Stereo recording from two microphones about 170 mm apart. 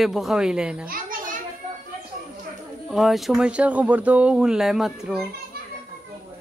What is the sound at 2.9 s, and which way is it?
Speech, centre (ahead or behind).